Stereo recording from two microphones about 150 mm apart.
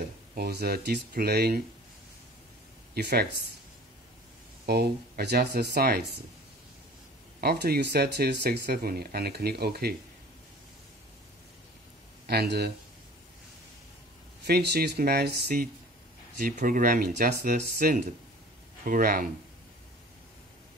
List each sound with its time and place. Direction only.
0.3 s speech: 90° right
2.9 s speech: 90° right
4.6 s speech: 90° right
7.3 s speech: 90° right
12.3 s speech: 90° right
14.4 s speech: 90° right
16.3 s speech: 65° right (ahead or behind)